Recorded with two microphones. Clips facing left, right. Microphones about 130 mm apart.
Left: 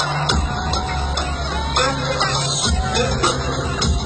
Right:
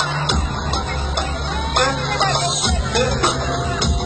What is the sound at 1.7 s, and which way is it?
Music, 55° right (ahead or behind).